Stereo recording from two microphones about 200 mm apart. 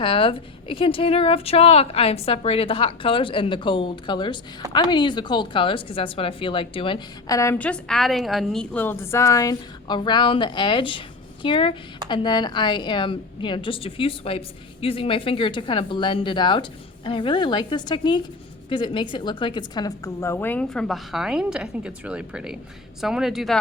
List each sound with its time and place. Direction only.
0.0 s a woman's voice: 25° left (ahead or behind); by 23.6 s centre (ahead or behind)